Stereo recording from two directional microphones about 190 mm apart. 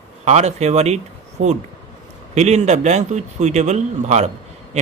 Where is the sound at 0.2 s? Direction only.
35° right (ahead or behind).